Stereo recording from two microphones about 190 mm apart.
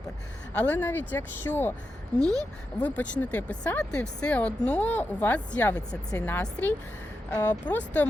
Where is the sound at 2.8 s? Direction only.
10° left (ahead or behind).